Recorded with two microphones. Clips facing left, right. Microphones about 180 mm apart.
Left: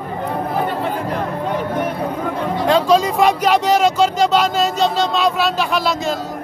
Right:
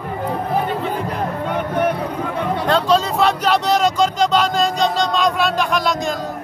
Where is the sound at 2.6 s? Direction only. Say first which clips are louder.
Left 3 dB; 10° left (ahead or behind).